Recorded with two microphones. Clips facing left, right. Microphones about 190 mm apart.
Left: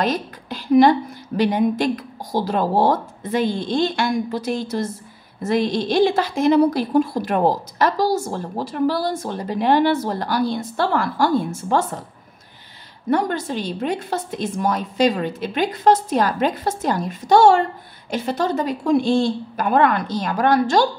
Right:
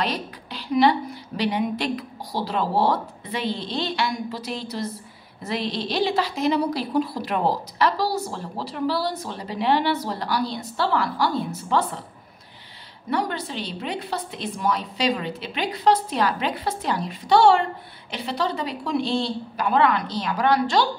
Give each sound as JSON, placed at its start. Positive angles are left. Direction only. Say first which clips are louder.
{"t": 0.0, "sound": "a woman's voice", "louder": "left 5 dB", "side_deg": 45}
{"t": 13.1, "sound": "a woman's voice", "louder": "left 6 dB", "side_deg": 45}